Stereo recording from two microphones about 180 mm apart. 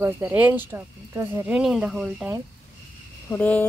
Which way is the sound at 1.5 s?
5° right (ahead or behind).